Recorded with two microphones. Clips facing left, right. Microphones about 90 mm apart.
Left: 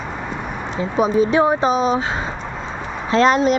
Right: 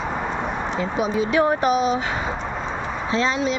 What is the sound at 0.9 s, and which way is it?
Speech, 40° left (ahead or behind).